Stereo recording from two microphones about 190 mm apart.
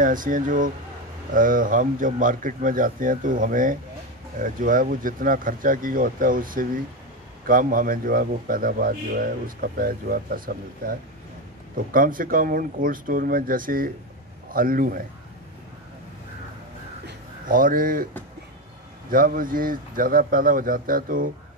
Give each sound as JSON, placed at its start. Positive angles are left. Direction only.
{"t": 0.0, "sound": "a man's voice", "side_deg": -45}
{"t": 17.0, "sound": "a sound", "side_deg": -45}
{"t": 19.0, "sound": "a man's voice", "side_deg": -50}